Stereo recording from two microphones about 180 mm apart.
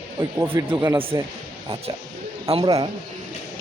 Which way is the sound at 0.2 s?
15° right (ahead or behind).